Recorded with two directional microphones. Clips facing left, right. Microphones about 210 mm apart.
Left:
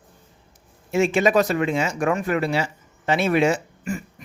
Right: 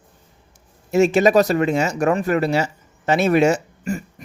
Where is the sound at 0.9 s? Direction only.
40° right (ahead or behind).